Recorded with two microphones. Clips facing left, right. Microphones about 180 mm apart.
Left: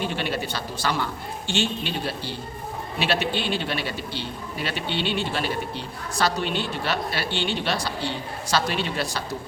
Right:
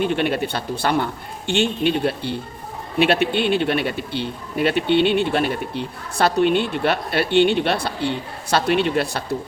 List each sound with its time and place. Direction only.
0.0 s speech: 55° right (ahead or behind)